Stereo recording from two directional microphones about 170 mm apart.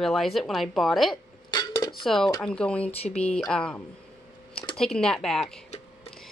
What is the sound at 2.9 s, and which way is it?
Speech, 35° left (ahead or behind).